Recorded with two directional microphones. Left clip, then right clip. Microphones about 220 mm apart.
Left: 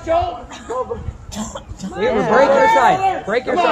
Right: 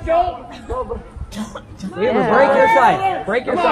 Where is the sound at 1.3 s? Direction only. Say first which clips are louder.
Left 2 dB; 35° left (ahead or behind).